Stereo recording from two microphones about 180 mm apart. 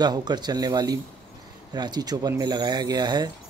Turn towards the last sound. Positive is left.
turn(degrees=-20)  # may be behind; listen again after turning